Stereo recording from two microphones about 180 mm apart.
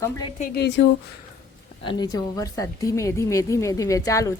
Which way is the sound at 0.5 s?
70° left (ahead or behind).